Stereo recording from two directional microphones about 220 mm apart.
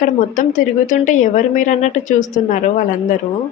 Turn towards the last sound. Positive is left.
turn(degrees=35)  # may be behind; listen again after turning